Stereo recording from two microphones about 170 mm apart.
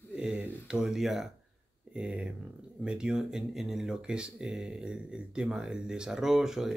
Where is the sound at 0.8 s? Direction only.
Centre (ahead or behind).